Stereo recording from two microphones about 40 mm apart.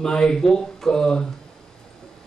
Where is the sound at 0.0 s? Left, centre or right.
Centre.